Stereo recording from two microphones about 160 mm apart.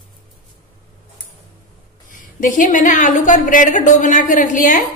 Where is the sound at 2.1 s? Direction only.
55° left (ahead or behind).